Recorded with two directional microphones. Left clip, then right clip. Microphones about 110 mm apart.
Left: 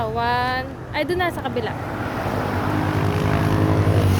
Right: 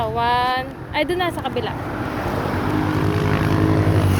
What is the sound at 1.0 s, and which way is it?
Speech, 40° left (ahead or behind).